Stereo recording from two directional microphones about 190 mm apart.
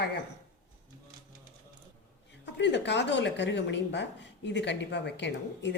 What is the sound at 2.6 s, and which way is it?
A woman's voice, 65° left (ahead or behind).